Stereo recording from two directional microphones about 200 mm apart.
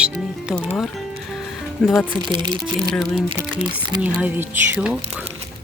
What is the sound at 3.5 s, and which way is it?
Speech, 25° right (ahead or behind).